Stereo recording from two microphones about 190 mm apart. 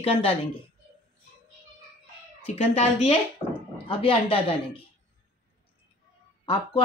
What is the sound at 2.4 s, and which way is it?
Speech, 30° left (ahead or behind).